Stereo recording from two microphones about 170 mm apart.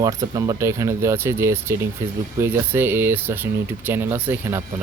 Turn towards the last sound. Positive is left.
turn(degrees=-15)  # may be behind; listen again after turning